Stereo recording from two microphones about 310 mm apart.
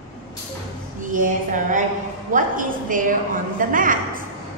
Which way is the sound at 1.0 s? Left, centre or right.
Right.